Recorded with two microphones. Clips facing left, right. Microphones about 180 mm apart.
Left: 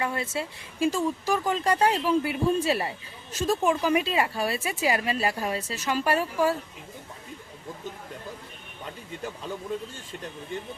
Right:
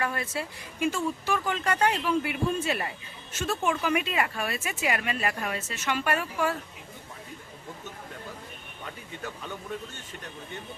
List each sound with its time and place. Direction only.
0.0 s speech: 25° left (ahead or behind)